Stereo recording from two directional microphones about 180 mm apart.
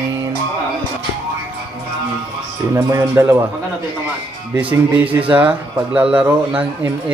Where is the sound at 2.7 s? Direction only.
15° right (ahead or behind).